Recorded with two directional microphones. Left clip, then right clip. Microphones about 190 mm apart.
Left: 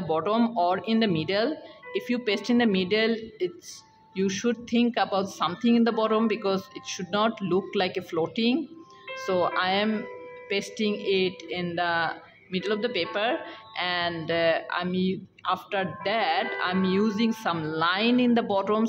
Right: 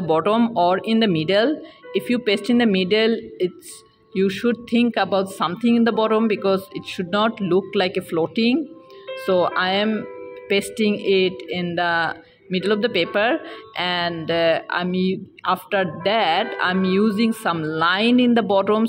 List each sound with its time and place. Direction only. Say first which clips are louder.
0.1 s speech: right 7 dB; 30° right (ahead or behind)
10.5 s speech: right 8 dB; 30° right (ahead or behind)